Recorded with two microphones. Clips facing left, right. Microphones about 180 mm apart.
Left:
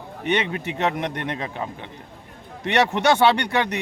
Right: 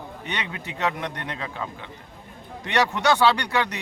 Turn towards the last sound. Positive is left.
turn(degrees=20)  # may be behind; listen again after turning